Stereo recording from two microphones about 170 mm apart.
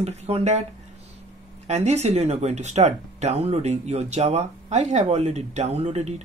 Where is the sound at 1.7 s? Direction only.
40° right (ahead or behind).